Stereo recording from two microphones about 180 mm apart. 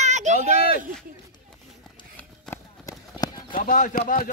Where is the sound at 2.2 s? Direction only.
10° left (ahead or behind).